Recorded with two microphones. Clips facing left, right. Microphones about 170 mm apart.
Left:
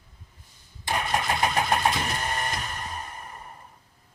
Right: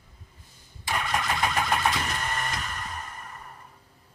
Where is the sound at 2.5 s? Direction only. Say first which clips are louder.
Left 1 dB; 25° left (ahead or behind).